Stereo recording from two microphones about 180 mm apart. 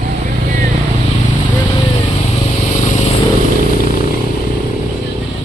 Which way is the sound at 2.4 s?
40° left (ahead or behind).